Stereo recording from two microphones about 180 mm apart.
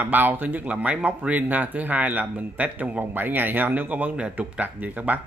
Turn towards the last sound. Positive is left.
turn(degrees=-10)  # may be behind; listen again after turning